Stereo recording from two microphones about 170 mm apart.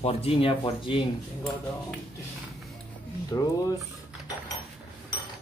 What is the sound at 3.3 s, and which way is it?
Speech, 20° left (ahead or behind).